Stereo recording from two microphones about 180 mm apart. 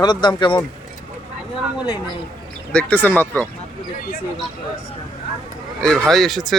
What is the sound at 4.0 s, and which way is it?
Speech, 50° left (ahead or behind).